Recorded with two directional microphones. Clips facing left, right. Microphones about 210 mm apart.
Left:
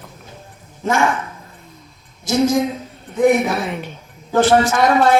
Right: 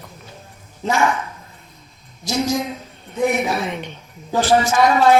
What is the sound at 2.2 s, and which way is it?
Speech, 50° left (ahead or behind).